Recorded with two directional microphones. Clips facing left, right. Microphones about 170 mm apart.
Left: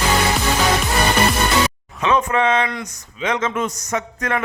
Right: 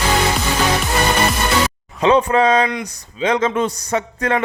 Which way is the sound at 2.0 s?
35° right (ahead or behind).